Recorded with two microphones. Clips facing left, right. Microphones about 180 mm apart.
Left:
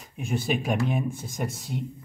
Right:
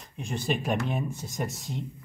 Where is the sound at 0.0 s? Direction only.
5° left (ahead or behind).